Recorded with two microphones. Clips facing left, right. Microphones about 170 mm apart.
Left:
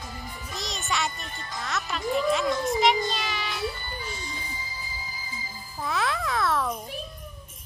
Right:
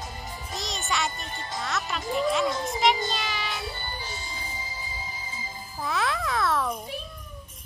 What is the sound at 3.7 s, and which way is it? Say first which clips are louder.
Music: even; 30° right (ahead or behind).